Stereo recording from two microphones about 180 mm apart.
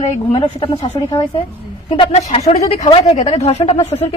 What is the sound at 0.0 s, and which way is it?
A woman's voice, 30° left (ahead or behind).